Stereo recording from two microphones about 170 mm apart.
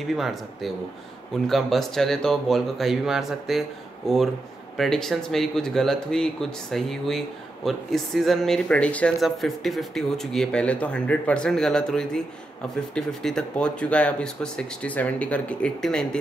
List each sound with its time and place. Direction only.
0.0 s speech: centre (ahead or behind)